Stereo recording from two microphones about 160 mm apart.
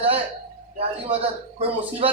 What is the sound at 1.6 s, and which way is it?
Speech, 40° right (ahead or behind).